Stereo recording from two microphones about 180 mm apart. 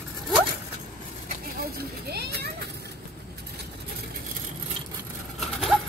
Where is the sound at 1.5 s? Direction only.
60° right (ahead or behind).